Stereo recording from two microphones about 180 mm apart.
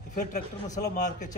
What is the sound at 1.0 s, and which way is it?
Speech, 45° left (ahead or behind).